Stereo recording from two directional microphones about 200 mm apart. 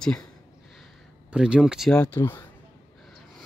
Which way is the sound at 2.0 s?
10° left (ahead or behind).